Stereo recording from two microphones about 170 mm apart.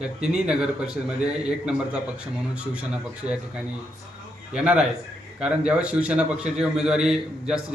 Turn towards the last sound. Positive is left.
turn(degrees=-5)  # may be behind; listen again after turning